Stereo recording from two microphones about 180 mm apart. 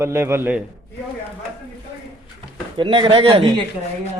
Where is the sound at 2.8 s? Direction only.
25° right (ahead or behind).